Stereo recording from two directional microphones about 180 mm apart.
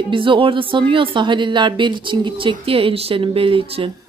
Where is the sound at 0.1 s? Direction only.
30° right (ahead or behind).